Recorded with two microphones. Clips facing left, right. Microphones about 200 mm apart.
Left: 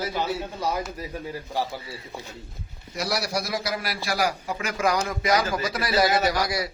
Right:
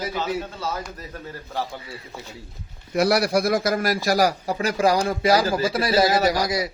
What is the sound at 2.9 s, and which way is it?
A man's voice, 60° right (ahead or behind).